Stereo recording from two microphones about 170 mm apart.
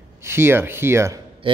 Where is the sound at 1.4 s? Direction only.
30° right (ahead or behind).